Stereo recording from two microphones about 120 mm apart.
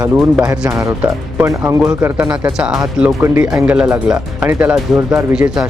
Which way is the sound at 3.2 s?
20° right (ahead or behind).